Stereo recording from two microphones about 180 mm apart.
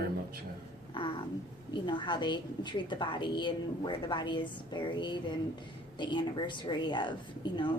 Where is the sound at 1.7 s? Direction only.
25° left (ahead or behind).